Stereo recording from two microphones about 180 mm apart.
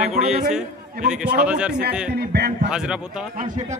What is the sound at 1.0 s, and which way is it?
Speech, 5° right (ahead or behind).